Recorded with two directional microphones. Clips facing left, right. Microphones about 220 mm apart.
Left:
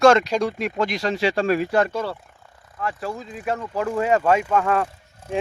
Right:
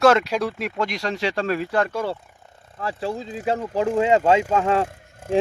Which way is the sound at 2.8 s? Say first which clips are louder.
Right 2 dB; 30° right (ahead or behind).